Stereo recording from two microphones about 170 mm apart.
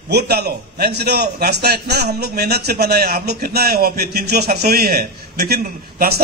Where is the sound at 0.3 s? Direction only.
70° right (ahead or behind).